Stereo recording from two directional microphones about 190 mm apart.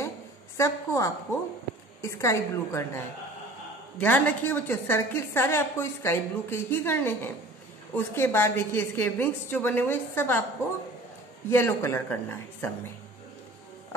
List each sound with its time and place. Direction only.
0.6 s a woman's voice: 15° left (ahead or behind)
4.0 s a woman's voice: 10° left (ahead or behind)
11.5 s a woman's voice: 15° left (ahead or behind)